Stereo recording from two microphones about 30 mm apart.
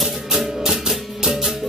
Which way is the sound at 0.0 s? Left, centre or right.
Centre.